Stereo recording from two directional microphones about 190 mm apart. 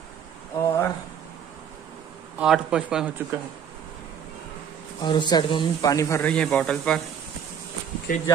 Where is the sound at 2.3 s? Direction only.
5° right (ahead or behind).